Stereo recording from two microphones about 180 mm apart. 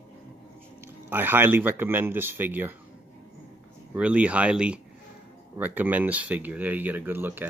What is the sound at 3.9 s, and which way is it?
Speech, 5° right (ahead or behind).